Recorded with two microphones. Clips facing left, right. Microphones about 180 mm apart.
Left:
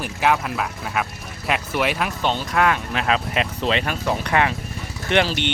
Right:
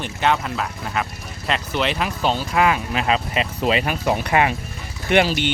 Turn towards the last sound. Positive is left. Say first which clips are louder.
# right 2 dB
turn(degrees=-5)  # may be behind; listen again after turning